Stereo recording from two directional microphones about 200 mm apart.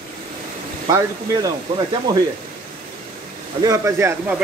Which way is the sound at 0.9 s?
15° right (ahead or behind).